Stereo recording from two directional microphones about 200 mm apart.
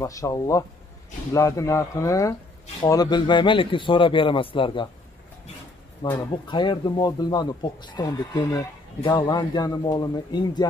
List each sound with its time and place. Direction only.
0.0 s speech: 15° left (ahead or behind)
6.0 s speech: 20° left (ahead or behind)